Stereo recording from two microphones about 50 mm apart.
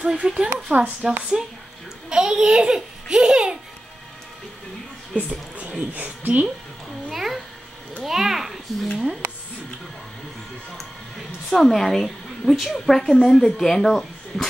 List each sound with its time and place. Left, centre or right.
0.0 s speech: centre
5.9 s a woman's voice: right
7.1 s babbling: centre
8.0 s speech: centre
11.5 s a woman's voice: centre